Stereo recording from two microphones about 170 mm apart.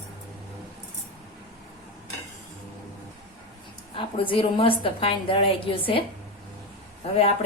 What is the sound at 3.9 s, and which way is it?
A woman's voice, 30° left (ahead or behind).